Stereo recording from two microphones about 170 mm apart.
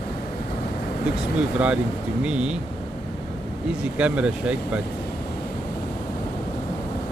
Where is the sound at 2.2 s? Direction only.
5° right (ahead or behind).